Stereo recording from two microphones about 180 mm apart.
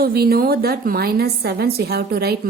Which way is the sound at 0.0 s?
60° right (ahead or behind).